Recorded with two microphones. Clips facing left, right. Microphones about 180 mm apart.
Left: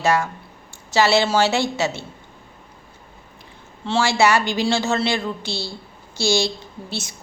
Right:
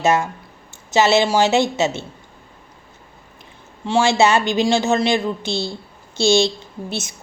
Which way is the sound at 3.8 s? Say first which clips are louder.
Right 3 dB; 20° right (ahead or behind).